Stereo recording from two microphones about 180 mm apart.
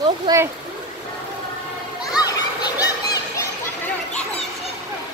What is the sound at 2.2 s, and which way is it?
Children playing, 20° left (ahead or behind).